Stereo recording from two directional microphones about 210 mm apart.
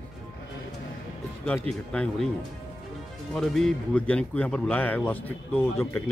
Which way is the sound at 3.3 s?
Centre (ahead or behind).